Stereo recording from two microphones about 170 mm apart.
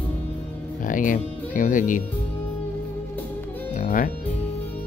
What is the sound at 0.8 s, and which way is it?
Speech, 50° left (ahead or behind).